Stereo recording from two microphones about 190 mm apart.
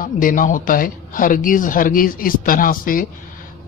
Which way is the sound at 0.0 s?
45° left (ahead or behind).